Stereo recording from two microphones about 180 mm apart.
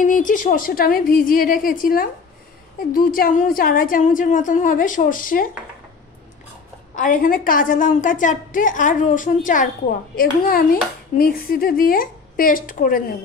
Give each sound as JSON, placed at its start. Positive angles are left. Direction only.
{"t": 0.0, "sound": "a woman's voice", "side_deg": 45}
{"t": 7.0, "sound": "a woman's voice", "side_deg": 50}